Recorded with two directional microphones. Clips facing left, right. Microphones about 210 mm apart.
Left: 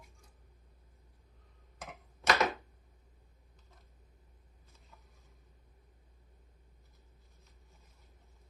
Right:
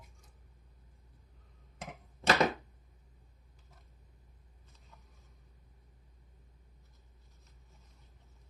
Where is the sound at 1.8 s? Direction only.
30° right (ahead or behind).